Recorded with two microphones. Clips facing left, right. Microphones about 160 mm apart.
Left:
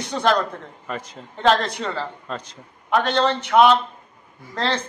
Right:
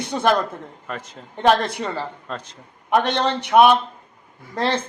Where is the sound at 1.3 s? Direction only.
15° right (ahead or behind).